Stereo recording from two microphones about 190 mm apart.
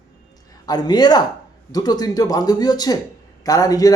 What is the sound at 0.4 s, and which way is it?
A man's voice, 20° left (ahead or behind).